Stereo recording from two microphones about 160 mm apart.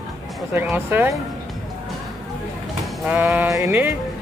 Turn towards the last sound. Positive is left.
turn(degrees=-15)  # may be behind; listen again after turning